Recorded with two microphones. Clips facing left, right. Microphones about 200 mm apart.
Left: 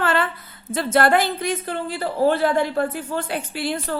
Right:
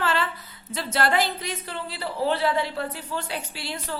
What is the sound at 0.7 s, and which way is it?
Speech, 50° left (ahead or behind).